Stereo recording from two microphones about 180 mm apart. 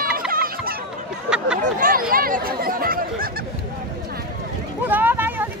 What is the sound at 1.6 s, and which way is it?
Chatter, 50° right (ahead or behind).